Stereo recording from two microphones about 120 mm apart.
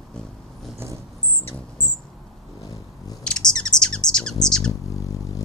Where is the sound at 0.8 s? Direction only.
20° right (ahead or behind).